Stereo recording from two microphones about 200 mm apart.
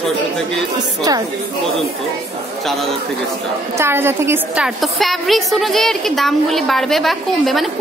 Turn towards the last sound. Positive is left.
turn(degrees=0)  # may be behind; listen again after turning